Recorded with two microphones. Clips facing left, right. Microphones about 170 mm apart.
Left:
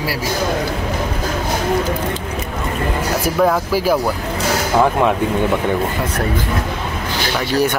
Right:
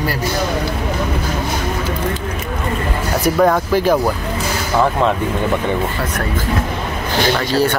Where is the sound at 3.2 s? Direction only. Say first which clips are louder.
Right 3 dB; 5° left (ahead or behind).